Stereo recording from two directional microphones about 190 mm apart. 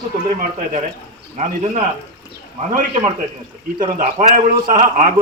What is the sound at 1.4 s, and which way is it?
Speech, 40° right (ahead or behind).